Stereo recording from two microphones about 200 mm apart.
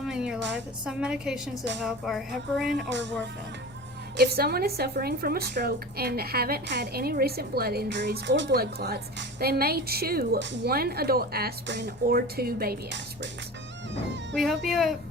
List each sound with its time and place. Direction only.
0.0 s music: 5° right (ahead or behind)
2.9 s speech: 65° right (ahead or behind)
4.2 s a woman's voice: 55° right (ahead or behind)
14.3 s music: centre (ahead or behind)